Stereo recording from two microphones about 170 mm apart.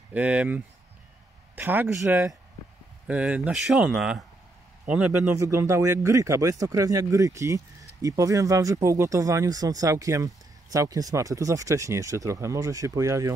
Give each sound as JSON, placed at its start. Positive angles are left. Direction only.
{"t": 0.1, "sound": "a man's voice", "side_deg": -10}